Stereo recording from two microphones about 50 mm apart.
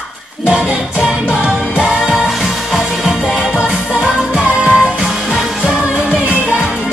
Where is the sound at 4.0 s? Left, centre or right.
Centre.